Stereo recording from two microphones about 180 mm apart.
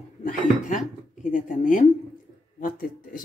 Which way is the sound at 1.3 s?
45° left (ahead or behind).